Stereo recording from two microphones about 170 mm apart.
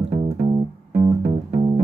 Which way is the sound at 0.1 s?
40° right (ahead or behind).